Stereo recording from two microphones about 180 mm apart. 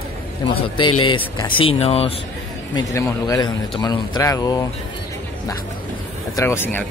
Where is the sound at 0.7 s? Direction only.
25° left (ahead or behind).